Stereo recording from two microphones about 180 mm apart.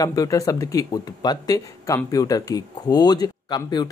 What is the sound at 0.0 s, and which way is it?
Speech, 20° left (ahead or behind).